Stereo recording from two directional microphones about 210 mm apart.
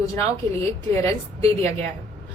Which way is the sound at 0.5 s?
15° left (ahead or behind).